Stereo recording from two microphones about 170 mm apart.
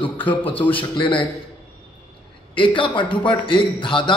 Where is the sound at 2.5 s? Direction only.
30° left (ahead or behind).